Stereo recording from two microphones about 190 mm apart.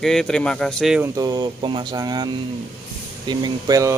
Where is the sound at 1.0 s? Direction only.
20° right (ahead or behind).